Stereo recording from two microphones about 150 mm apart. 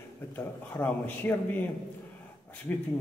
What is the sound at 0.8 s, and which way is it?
Speech, 10° left (ahead or behind).